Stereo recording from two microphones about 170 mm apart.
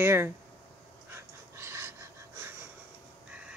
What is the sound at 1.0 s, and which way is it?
Dog, 15° right (ahead or behind).